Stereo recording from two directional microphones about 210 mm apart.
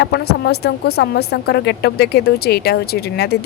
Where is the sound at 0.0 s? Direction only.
55° left (ahead or behind).